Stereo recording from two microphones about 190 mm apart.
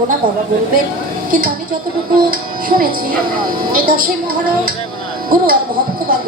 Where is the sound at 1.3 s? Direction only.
45° right (ahead or behind).